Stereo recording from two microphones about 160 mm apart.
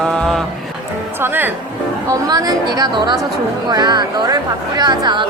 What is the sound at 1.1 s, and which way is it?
Speech, 15° right (ahead or behind).